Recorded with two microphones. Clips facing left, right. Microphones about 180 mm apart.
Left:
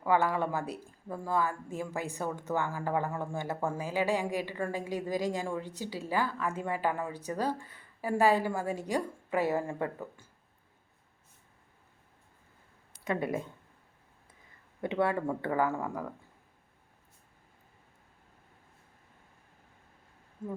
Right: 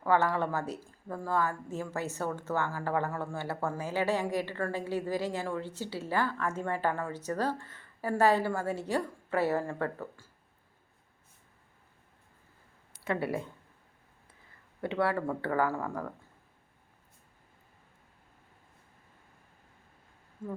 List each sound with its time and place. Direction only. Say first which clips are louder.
0.0 s speech: even; 15° left (ahead or behind)
13.1 s speech: even; 20° left (ahead or behind)
14.8 s speech: even; 20° left (ahead or behind)
20.4 s speech: even; 20° left (ahead or behind)